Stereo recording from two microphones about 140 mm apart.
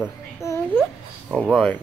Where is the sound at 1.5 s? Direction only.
5° left (ahead or behind).